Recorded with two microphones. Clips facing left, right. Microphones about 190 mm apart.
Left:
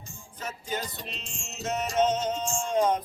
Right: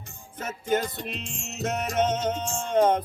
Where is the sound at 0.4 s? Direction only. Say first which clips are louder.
Right 8 dB; 50° right (ahead or behind).